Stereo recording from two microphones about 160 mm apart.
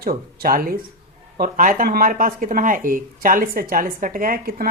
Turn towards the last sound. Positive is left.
turn(degrees=-60)  # may be behind; listen again after turning